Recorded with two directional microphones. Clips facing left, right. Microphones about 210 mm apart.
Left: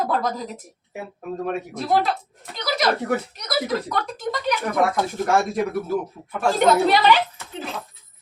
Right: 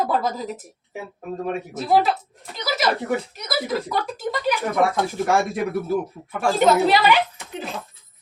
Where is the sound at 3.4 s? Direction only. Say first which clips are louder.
Left 1 dB; 5° right (ahead or behind).